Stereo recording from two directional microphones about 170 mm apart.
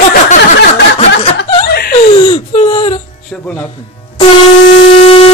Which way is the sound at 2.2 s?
35° left (ahead or behind).